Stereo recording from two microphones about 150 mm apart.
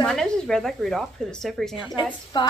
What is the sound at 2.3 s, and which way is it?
Speech, 30° left (ahead or behind).